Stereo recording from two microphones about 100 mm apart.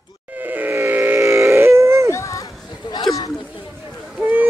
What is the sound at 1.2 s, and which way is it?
Grunt, 30° right (ahead or behind).